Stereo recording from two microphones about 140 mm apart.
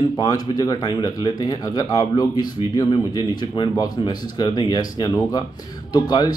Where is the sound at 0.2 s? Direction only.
30° left (ahead or behind).